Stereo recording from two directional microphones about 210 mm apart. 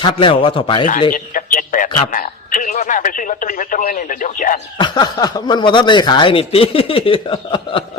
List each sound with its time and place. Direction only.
0.0 s a man's voice: 25° left (ahead or behind)
1.1 s a man's voice: 40° left (ahead or behind)
4.8 s a man's voice: 20° left (ahead or behind)